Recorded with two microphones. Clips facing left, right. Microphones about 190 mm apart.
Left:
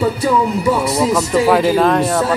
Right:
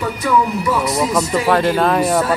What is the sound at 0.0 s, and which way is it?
Speech, 30° left (ahead or behind).